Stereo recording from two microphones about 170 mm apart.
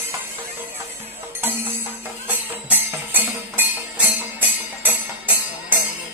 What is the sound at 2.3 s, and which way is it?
Music, 10° right (ahead or behind).